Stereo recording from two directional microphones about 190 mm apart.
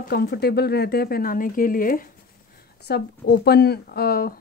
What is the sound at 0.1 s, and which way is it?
Speech, 55° left (ahead or behind).